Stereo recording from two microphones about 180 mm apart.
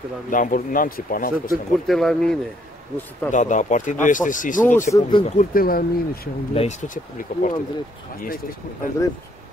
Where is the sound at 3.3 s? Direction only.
45° left (ahead or behind).